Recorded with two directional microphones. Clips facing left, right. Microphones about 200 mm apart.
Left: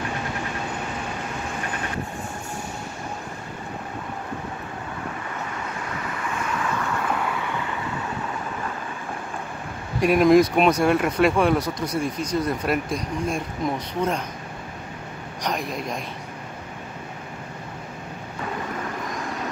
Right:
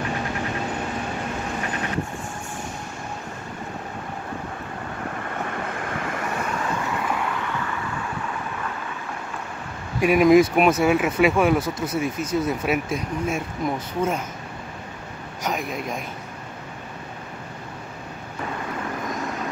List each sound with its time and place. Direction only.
5.5 s vehicle: 55° right (ahead or behind)
9.9 s speech: 5° right (ahead or behind)
15.4 s speech: centre (ahead or behind)